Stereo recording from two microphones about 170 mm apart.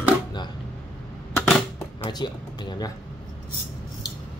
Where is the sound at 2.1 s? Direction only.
25° left (ahead or behind).